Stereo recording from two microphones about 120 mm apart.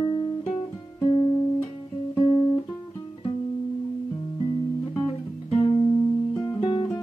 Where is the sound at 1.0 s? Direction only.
35° left (ahead or behind).